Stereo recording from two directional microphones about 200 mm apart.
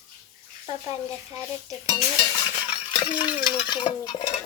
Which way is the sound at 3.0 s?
20° left (ahead or behind).